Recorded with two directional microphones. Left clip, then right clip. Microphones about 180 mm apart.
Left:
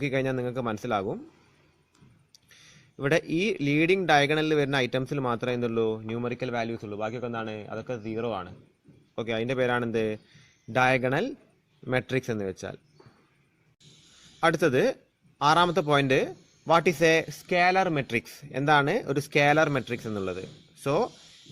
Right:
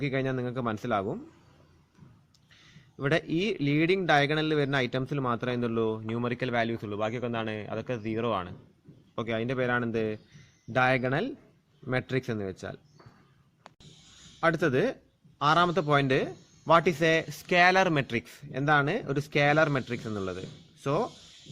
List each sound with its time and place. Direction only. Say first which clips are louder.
0.0 s speech: left 3 dB; 25° left (ahead or behind)
2.5 s speech: left 2 dB; 25° left (ahead or behind); by 8.5 s centre (ahead or behind)
9.1 s speech: left 2 dB; 20° left (ahead or behind)
14.4 s speech: left 3 dB; 25° left (ahead or behind)
17.4 s speech: right 3 dB; 10° left (ahead or behind)
18.0 s speech: left 3 dB; 20° left (ahead or behind)